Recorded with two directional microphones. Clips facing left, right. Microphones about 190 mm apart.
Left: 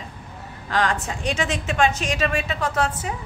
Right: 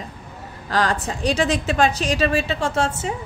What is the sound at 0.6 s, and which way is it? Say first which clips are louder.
A woman's voice: right 2 dB; 35° right (ahead or behind).